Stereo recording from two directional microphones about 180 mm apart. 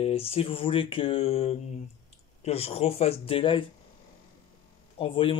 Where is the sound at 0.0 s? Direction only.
35° left (ahead or behind).